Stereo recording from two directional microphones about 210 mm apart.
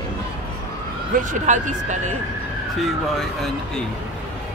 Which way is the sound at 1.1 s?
35° right (ahead or behind).